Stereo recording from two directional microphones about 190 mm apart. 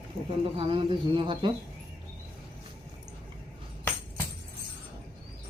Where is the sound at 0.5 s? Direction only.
25° right (ahead or behind).